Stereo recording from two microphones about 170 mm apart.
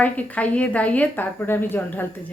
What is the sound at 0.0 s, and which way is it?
A woman's voice, 10° left (ahead or behind).